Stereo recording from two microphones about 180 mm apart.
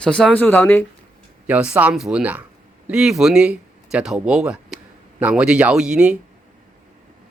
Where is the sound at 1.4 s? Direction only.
5° right (ahead or behind).